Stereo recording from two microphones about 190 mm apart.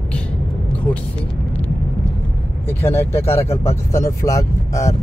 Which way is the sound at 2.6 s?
10° left (ahead or behind).